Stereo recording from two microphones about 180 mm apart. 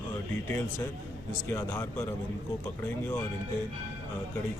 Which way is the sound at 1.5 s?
15° left (ahead or behind).